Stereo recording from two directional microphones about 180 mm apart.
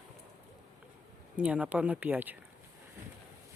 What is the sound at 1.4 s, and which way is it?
Speech, 5° right (ahead or behind).